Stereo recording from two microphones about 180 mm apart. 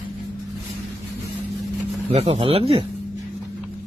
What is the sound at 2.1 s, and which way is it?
Speech, 30° right (ahead or behind).